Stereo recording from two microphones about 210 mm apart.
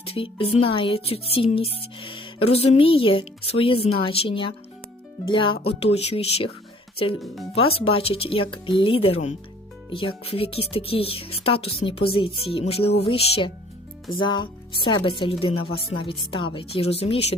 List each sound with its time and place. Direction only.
0.0 s speech: 25° left (ahead or behind)
7.5 s speech: 25° left (ahead or behind)